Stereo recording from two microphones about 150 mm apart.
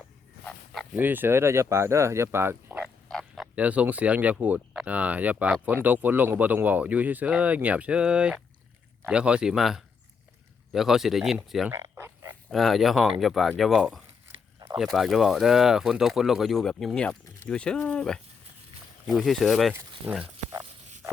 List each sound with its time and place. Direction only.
0.4 s dog: centre (ahead or behind)
0.9 s speech: 10° right (ahead or behind)
3.1 s speech: centre (ahead or behind)
11.7 s a sound: 15° right (ahead or behind)
12.5 s speech: centre (ahead or behind)
20.1 s speech: 10° right (ahead or behind)